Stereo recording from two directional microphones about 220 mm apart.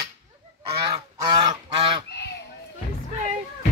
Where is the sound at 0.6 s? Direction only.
25° right (ahead or behind).